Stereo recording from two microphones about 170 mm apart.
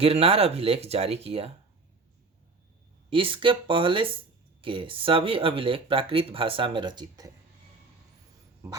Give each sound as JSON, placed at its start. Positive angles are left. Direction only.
{"t": 0.0, "sound": "speech", "side_deg": -35}
{"t": 3.1, "sound": "speech", "side_deg": -30}